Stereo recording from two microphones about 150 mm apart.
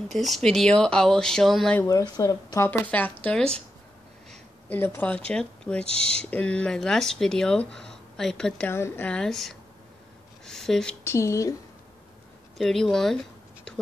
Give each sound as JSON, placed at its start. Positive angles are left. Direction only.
{"t": 0.1, "sound": "speech", "side_deg": 0}
{"t": 1.8, "sound": "speech", "side_deg": 20}
{"t": 2.8, "sound": "speech", "side_deg": 10}
{"t": 4.3, "sound": "a sound", "side_deg": 10}
{"t": 5.3, "sound": "speech", "side_deg": 5}
{"t": 5.9, "sound": "speech", "side_deg": -40}
{"t": 6.3, "sound": "speech", "side_deg": 5}
{"t": 11.1, "sound": "speech", "side_deg": 20}
{"t": 12.5, "sound": "speech", "side_deg": 0}